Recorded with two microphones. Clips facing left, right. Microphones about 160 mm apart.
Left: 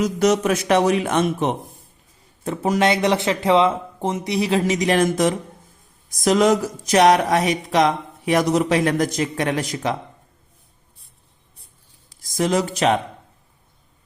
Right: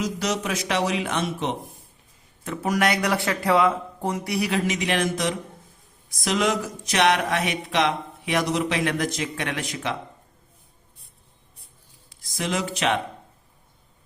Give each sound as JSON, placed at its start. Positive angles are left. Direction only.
{"t": 0.0, "sound": "speech", "side_deg": 50}
{"t": 2.4, "sound": "speech", "side_deg": 30}
{"t": 6.1, "sound": "a sound", "side_deg": 45}
{"t": 12.0, "sound": "speech", "side_deg": 45}